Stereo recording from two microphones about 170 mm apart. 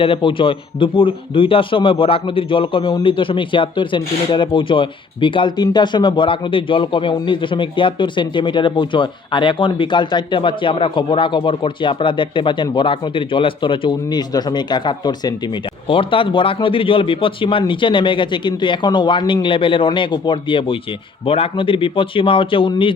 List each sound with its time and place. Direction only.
0.0 s a man's voice: 30° left (ahead or behind)